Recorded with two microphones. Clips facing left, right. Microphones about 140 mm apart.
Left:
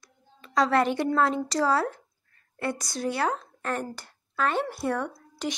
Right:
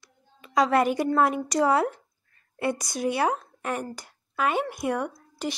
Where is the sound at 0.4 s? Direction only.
5° right (ahead or behind).